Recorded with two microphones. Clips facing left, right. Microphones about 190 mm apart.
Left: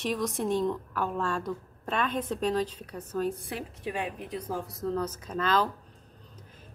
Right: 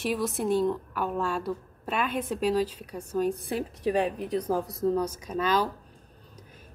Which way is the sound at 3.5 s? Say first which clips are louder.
Right 8 dB; 35° right (ahead or behind).